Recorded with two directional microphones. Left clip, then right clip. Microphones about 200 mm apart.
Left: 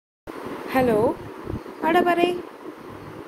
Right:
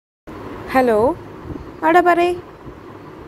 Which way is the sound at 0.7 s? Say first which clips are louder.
Right 5 dB; 30° right (ahead or behind).